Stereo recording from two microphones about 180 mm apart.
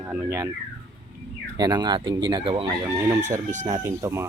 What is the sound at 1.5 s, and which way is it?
Speech, 20° right (ahead or behind).